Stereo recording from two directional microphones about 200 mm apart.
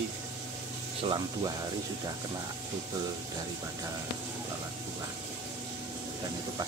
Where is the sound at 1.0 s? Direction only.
20° right (ahead or behind).